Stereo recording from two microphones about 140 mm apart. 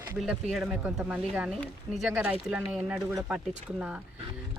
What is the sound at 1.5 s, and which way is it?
Speech, centre (ahead or behind).